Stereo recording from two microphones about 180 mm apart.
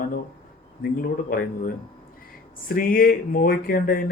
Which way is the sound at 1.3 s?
50° left (ahead or behind).